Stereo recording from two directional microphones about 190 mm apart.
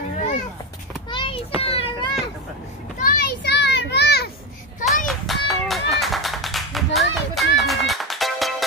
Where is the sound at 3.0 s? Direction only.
55° left (ahead or behind).